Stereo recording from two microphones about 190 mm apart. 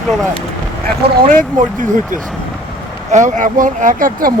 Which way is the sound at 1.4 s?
45° right (ahead or behind).